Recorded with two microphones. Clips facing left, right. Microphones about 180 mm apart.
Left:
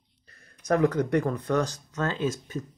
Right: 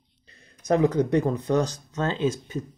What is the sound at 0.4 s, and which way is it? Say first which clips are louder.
Speech: right 2 dB; 20° right (ahead or behind).